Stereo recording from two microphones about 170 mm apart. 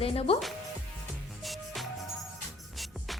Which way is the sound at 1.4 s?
Centre (ahead or behind).